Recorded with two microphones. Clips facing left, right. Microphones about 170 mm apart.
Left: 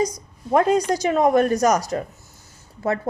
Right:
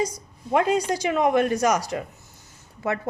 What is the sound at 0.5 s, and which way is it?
A woman's voice, 40° left (ahead or behind).